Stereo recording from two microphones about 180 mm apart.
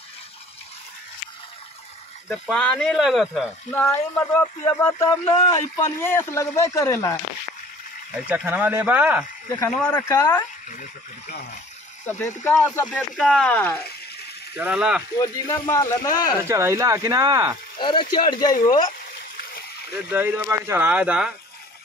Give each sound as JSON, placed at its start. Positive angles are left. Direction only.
{"t": 2.5, "sound": "speech", "side_deg": 5}
{"t": 3.7, "sound": "speech", "side_deg": 10}
{"t": 8.3, "sound": "speech", "side_deg": -10}
{"t": 9.7, "sound": "speech", "side_deg": 5}
{"t": 10.0, "sound": "speech", "side_deg": 20}
{"t": 12.4, "sound": "speech", "side_deg": 15}
{"t": 12.8, "sound": "speech", "side_deg": 5}
{"t": 14.6, "sound": "speech", "side_deg": -5}
{"t": 15.1, "sound": "speech", "side_deg": 15}
{"t": 16.4, "sound": "speech", "side_deg": -15}
{"t": 17.7, "sound": "a man's voice", "side_deg": 25}
{"t": 19.9, "sound": "speech", "side_deg": -10}